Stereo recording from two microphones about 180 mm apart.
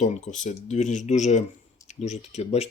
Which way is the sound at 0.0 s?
40° left (ahead or behind).